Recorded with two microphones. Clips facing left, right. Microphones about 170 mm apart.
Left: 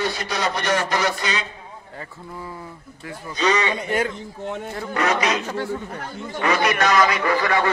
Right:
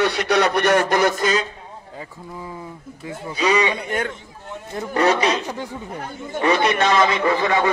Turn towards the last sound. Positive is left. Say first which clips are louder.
# right 2 dB
turn(degrees=-20)  # may be behind; listen again after turning